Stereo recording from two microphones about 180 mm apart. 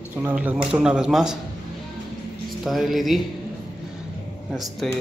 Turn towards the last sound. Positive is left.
turn(degrees=0)  # may be behind; listen again after turning